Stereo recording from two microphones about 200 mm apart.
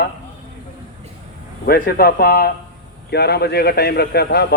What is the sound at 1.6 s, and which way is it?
Speech, 50° left (ahead or behind).